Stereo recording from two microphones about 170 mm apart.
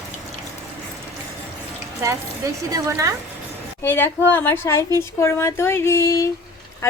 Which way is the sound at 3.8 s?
15° left (ahead or behind).